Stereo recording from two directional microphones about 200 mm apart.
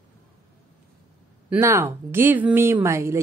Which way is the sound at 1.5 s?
15° right (ahead or behind).